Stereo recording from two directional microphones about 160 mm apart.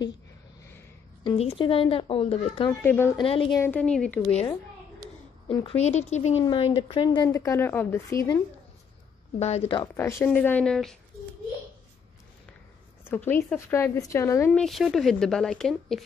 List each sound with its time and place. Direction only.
1.2 s speech: 35° left (ahead or behind)
2.8 s a woman's voice: 15° left (ahead or behind)
3.2 s speech: 35° left (ahead or behind)
3.5 s a woman's voice: 10° left (ahead or behind)
5.5 s speech: 35° left (ahead or behind)
6.4 s speech: 35° left (ahead or behind)
7.2 s a woman's voice: 15° left (ahead or behind)
9.4 s speech: 40° left (ahead or behind)
9.9 s a woman's voice: 15° left (ahead or behind)
13.3 s a woman's voice: 15° left (ahead or behind)
14.5 s speech: centre (ahead or behind)